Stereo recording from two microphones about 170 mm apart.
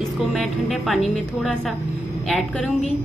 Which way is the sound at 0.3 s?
Centre (ahead or behind).